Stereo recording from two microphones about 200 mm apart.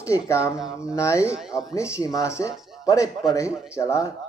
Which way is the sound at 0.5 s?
5° right (ahead or behind).